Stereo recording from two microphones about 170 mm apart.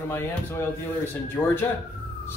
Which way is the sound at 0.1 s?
15° left (ahead or behind).